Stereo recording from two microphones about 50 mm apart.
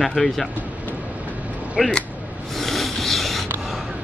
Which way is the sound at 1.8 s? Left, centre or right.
Centre.